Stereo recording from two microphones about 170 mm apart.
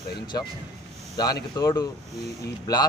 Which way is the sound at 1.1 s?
20° left (ahead or behind).